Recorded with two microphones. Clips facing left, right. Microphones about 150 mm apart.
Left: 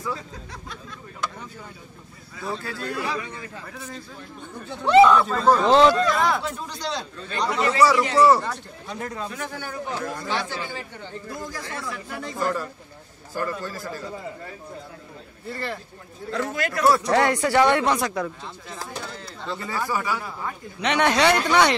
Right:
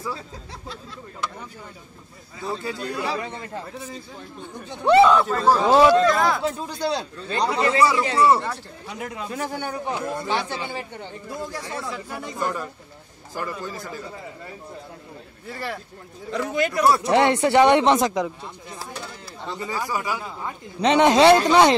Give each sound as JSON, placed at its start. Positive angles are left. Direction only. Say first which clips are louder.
{"t": 2.4, "sound": "speech", "louder": "right 2 dB", "side_deg": -20}
{"t": 4.6, "sound": "speech", "louder": "right 5 dB", "side_deg": -15}
{"t": 5.1, "sound": "a man's voice", "louder": "even", "side_deg": 0}
{"t": 7.2, "sound": "speech", "louder": "right 2 dB", "side_deg": -25}
{"t": 8.4, "sound": "speech", "louder": "right 1 dB", "side_deg": -10}
{"t": 9.3, "sound": "speech", "louder": "right 4 dB", "side_deg": -30}
{"t": 15.5, "sound": "speech", "louder": "even", "side_deg": -10}
{"t": 19.4, "sound": "speech", "louder": "even", "side_deg": -15}